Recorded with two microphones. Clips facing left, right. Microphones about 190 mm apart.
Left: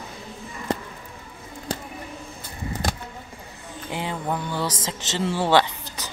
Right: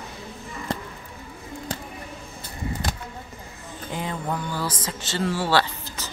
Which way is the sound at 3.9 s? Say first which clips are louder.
Left 1 dB; 15° left (ahead or behind).